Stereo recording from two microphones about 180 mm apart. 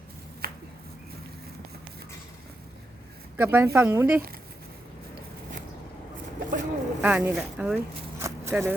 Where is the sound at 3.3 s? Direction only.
10° right (ahead or behind).